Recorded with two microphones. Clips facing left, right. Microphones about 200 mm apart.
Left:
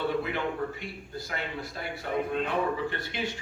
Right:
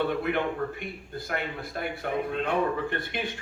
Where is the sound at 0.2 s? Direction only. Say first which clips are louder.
Right 3 dB; 55° right (ahead or behind).